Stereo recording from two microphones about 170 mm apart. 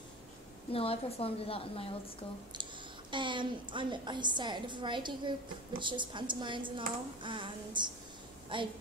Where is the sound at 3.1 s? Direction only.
30° right (ahead or behind).